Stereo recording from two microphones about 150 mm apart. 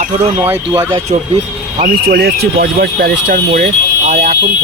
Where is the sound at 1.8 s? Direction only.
90° right; by 3.6 s 70° right (ahead or behind).